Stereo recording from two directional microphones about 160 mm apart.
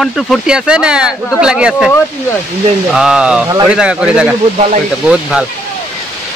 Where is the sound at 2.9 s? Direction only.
5° right (ahead or behind).